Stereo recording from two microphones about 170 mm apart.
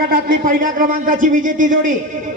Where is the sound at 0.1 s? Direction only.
55° right (ahead or behind).